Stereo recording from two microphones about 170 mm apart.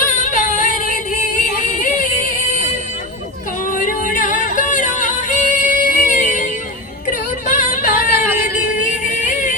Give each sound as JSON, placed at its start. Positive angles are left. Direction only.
{"t": 0.0, "sound": "a sound", "side_deg": 50}
{"t": 3.7, "sound": "music", "side_deg": 50}
{"t": 7.4, "sound": "music", "side_deg": 50}
{"t": 8.6, "sound": "yodeling", "side_deg": 50}